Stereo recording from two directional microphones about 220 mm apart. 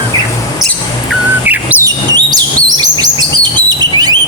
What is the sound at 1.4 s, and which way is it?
Chirp, 10° right (ahead or behind).